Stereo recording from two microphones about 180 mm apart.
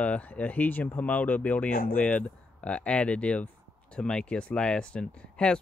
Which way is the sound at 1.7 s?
55° left (ahead or behind).